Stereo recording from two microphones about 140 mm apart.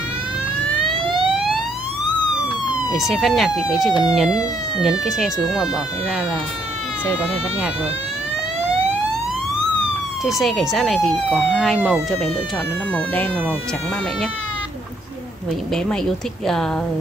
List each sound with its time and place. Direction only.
1.0 s emergency vehicle: 35° right (ahead or behind)
1.3 s emergency vehicle: centre (ahead or behind)
2.9 s speech: centre (ahead or behind)
10.2 s speech: centre (ahead or behind)
12.9 s speech: 10° left (ahead or behind)